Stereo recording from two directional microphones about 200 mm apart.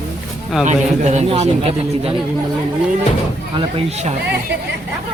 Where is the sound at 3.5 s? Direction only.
30° right (ahead or behind).